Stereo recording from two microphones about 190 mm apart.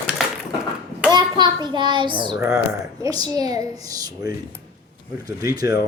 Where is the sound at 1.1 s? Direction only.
20° right (ahead or behind).